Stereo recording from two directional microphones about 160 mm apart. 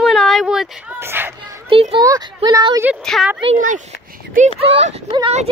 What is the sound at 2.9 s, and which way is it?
Speech, 5° right (ahead or behind).